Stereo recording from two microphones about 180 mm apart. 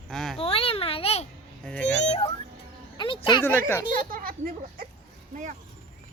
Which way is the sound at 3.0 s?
25° left (ahead or behind).